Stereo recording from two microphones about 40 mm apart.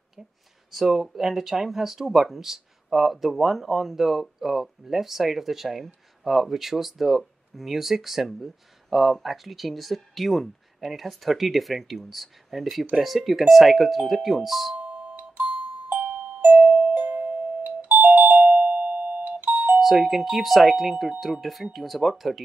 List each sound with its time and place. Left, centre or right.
0.7 s speech: centre
14.8 s music: right
16.4 s doorbell: right
19.8 s speech: centre